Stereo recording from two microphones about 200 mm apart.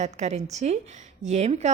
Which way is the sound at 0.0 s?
35° right (ahead or behind).